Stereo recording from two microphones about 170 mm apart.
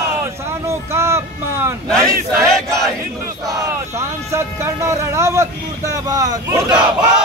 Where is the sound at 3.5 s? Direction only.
15° right (ahead or behind).